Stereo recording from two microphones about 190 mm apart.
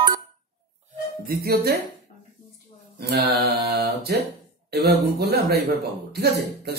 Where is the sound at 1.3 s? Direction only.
55° right (ahead or behind).